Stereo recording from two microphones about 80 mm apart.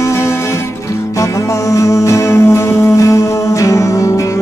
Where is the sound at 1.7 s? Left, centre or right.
Left.